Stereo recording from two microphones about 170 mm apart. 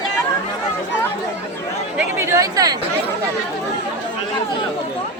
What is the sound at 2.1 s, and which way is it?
Speech, 15° right (ahead or behind).